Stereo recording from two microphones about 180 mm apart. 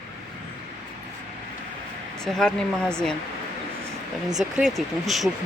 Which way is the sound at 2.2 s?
Centre (ahead or behind).